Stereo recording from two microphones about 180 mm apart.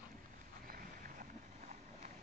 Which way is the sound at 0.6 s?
50° right (ahead or behind).